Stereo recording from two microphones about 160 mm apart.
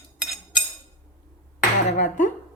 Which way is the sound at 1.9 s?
50° left (ahead or behind).